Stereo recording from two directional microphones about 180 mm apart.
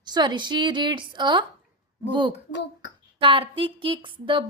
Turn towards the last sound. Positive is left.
turn(degrees=-30)  # may be behind; listen again after turning